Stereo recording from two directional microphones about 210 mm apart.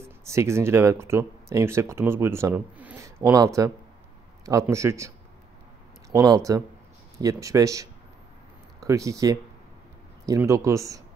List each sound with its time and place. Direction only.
0.0 s speech: 15° right (ahead or behind)
6.1 s speech: 15° right (ahead or behind)